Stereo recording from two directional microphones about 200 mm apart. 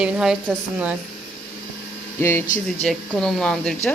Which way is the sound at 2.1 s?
10° left (ahead or behind).